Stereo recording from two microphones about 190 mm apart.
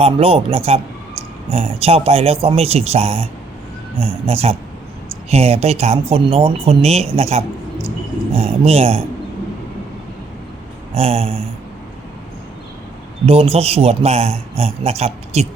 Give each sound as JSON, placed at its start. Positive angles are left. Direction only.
{"t": 0.0, "sound": "a man's voice", "side_deg": -30}
{"t": 10.9, "sound": "a man's voice", "side_deg": -30}
{"t": 13.2, "sound": "a man's voice", "side_deg": -30}